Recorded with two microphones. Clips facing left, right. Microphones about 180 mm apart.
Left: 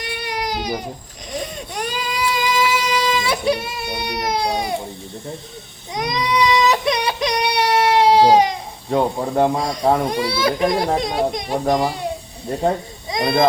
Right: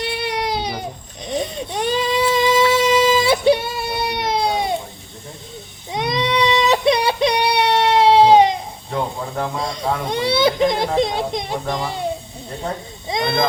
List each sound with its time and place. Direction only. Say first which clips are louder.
0.0 s baby cry: right 3 dB; 30° right (ahead or behind)
3.9 s a child's voice: right 1 dB; 25° right (ahead or behind)
5.9 s baby cry: right 1 dB; 25° right (ahead or behind)
8.9 s speech: left 6 dB; 30° left (ahead or behind)
10.1 s a child's voice: right 2 dB; 25° right (ahead or behind)
13.1 s a sound: even; 25° right (ahead or behind)